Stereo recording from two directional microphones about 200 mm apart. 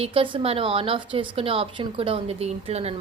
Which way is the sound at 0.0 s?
25° right (ahead or behind).